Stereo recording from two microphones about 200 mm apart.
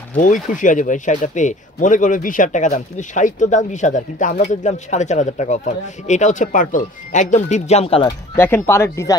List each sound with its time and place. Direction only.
0.2 s speech: 40° left (ahead or behind)
8.4 s speech: 10° left (ahead or behind)